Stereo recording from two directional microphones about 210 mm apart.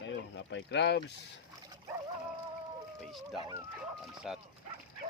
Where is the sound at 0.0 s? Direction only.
60° left (ahead or behind).